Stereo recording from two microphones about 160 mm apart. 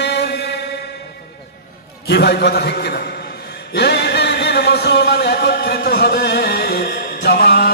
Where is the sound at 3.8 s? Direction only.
90° left.